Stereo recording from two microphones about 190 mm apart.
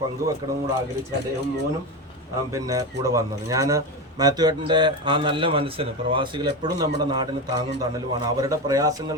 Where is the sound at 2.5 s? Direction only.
15° right (ahead or behind).